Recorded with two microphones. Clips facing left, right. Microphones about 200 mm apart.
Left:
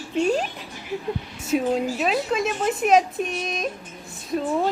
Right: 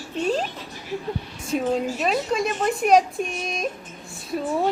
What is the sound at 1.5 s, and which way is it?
A woman's voice, centre (ahead or behind).